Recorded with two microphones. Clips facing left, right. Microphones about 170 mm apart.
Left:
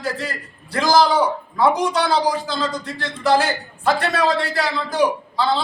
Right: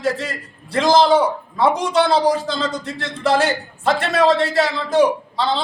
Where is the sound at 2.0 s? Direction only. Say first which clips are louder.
Right 4 dB; 25° right (ahead or behind).